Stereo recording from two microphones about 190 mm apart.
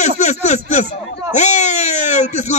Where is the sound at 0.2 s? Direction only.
35° left (ahead or behind).